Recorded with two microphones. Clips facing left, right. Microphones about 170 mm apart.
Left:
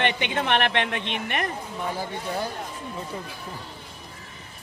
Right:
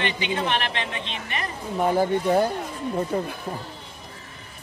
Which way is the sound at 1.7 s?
50° right (ahead or behind).